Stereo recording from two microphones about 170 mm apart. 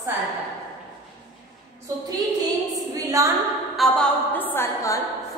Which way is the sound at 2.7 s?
20° right (ahead or behind).